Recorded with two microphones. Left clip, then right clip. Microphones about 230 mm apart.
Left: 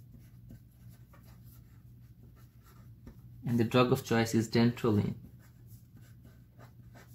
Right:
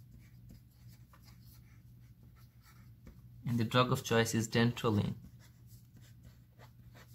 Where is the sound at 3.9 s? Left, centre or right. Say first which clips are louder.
Left 2 dB; right.